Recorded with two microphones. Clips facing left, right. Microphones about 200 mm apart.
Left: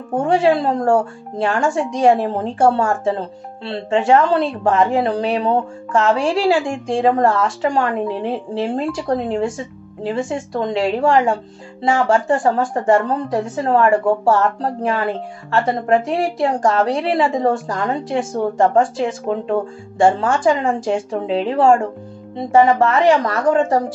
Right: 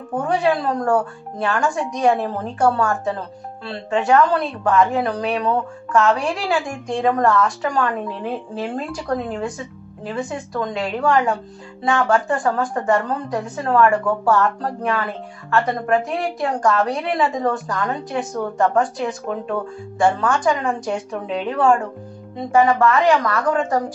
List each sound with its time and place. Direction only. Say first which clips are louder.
0.1 s speech: left 4 dB; 25° left (ahead or behind)